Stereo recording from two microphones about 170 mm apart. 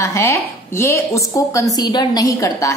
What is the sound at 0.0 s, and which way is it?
A woman's voice, 15° left (ahead or behind).